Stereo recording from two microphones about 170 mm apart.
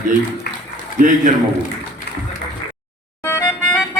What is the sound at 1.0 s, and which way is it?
Speech, 50° right (ahead or behind).